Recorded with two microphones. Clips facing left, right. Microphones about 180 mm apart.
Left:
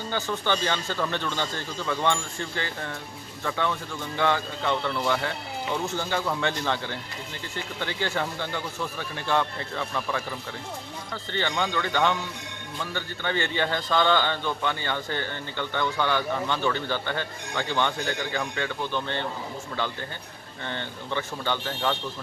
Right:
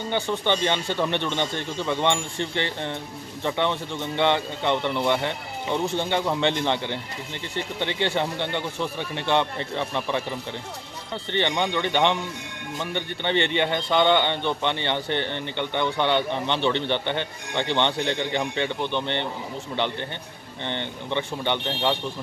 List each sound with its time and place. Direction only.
0.1 s a man's voice: 20° right (ahead or behind)
11.3 s a man's voice: 20° right (ahead or behind)
20.6 s a man's voice: 20° right (ahead or behind)